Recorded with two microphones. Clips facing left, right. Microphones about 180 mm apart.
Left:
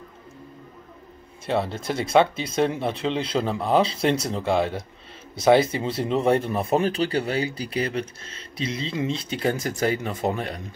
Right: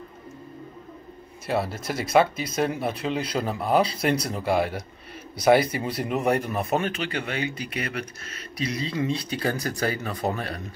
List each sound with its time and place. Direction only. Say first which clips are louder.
1.4 s speech: left 2 dB; 25° left (ahead or behind)